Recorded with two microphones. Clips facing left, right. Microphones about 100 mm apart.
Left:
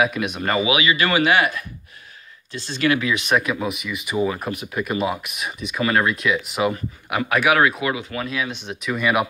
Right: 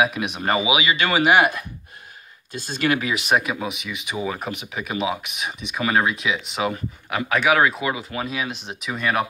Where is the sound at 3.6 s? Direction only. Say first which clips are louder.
Left 3 dB; centre (ahead or behind).